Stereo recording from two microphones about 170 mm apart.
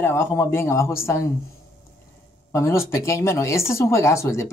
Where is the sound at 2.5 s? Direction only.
15° left (ahead or behind).